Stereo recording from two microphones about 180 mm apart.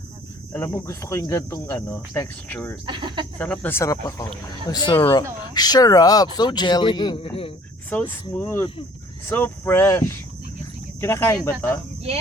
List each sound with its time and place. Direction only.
0.5 s speech: 15° left (ahead or behind)
2.8 s speech: 25° right (ahead or behind)
3.3 s speech: 10° left (ahead or behind); by 4.9 s 25° left (ahead or behind)
4.9 s speech: 15° left (ahead or behind); by 7.5 s 30° left (ahead or behind)
7.9 s speech: 10° left (ahead or behind)